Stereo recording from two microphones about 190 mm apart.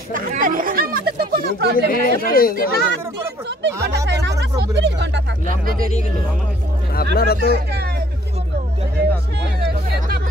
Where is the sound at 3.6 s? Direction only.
65° right (ahead or behind).